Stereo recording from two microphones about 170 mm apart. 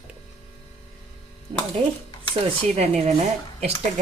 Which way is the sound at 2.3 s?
40° right (ahead or behind).